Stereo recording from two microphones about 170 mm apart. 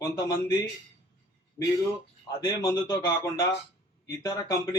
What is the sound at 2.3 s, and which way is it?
A man's voice, 25° left (ahead or behind).